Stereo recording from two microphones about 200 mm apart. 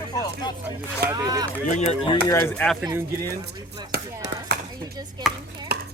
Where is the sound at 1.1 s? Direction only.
20° right (ahead or behind).